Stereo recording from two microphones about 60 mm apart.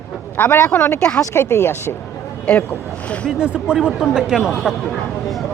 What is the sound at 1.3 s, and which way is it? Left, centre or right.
Speech, left.